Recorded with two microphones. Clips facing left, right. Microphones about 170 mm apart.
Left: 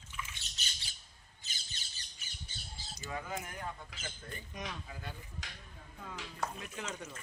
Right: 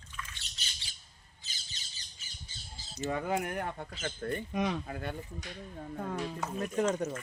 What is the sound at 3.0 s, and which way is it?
Speech, 65° right (ahead or behind).